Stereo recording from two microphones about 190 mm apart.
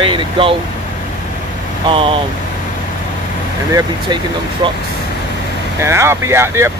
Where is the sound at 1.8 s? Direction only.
30° right (ahead or behind).